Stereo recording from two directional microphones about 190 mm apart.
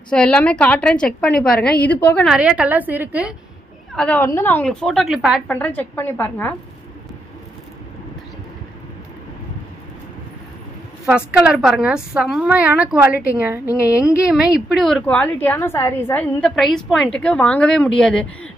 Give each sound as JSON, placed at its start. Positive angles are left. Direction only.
{"t": 0.1, "sound": "a woman's voice", "side_deg": 5}
{"t": 1.3, "sound": "a woman's voice", "side_deg": 50}
{"t": 2.0, "sound": "a woman's voice", "side_deg": 5}
{"t": 2.3, "sound": "a woman's voice", "side_deg": -5}
{"t": 3.9, "sound": "a woman's voice", "side_deg": 5}
{"t": 5.5, "sound": "a woman's voice", "side_deg": 10}
{"t": 11.1, "sound": "a woman's voice", "side_deg": -5}